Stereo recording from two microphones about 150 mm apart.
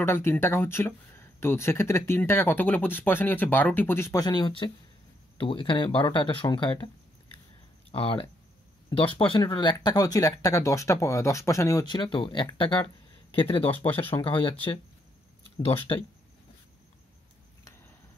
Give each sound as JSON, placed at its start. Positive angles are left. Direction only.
{"t": 0.0, "sound": "speech", "side_deg": 15}
{"t": 7.9, "sound": "speech", "side_deg": 40}